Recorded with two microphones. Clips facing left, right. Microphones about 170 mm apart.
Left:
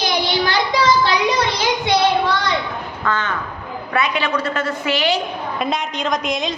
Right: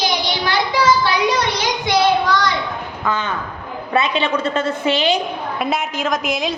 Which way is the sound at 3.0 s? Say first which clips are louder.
Even; 10° right (ahead or behind).